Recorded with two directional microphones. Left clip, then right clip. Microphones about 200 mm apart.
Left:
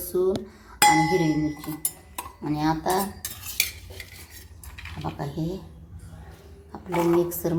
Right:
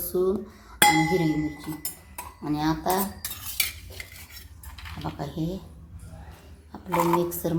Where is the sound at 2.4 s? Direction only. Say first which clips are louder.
Left 1 dB; 5° left (ahead or behind).